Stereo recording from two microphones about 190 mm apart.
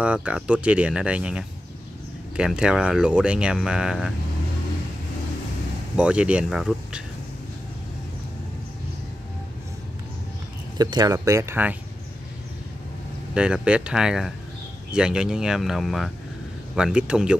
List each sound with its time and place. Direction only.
0.0 s speech: 5° right (ahead or behind)
5.9 s speech: 5° right (ahead or behind)
10.8 s speech: 20° right (ahead or behind)
13.3 s speech: 5° right (ahead or behind)